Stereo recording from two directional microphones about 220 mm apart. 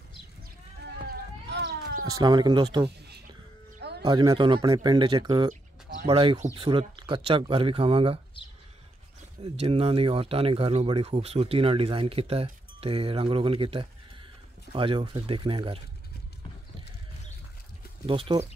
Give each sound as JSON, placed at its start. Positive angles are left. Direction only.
{"t": 1.0, "sound": "a sound", "side_deg": -45}
{"t": 2.0, "sound": "speech", "side_deg": -15}
{"t": 4.0, "sound": "speech", "side_deg": -15}
{"t": 9.4, "sound": "speech", "side_deg": -25}
{"t": 18.0, "sound": "speech", "side_deg": -25}